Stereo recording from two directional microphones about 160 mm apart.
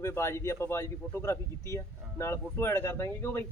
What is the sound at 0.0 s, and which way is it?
Speech, 15° left (ahead or behind).